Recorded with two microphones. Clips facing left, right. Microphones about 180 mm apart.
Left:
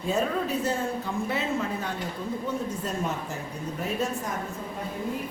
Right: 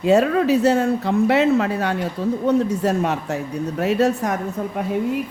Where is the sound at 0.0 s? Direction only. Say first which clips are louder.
Right 11 dB; 75° right (ahead or behind).